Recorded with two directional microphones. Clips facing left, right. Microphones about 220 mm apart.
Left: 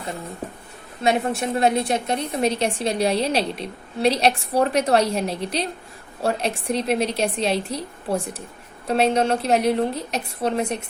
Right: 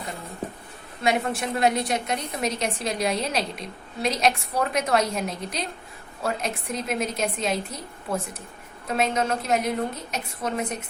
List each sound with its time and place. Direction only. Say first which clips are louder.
1.0 s a woman's voice: left 3 dB; 25° left (ahead or behind)